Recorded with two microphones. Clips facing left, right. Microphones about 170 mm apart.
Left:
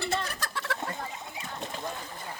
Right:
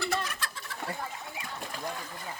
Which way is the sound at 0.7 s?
80° left.